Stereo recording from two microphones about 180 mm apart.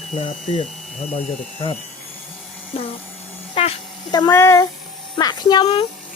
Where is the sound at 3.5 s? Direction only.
35° left (ahead or behind); by 4.6 s 15° left (ahead or behind).